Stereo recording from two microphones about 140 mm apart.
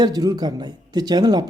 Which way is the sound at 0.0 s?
30° right (ahead or behind).